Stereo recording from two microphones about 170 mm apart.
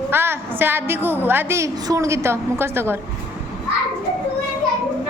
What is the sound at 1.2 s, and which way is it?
A woman's voice, 15° right (ahead or behind).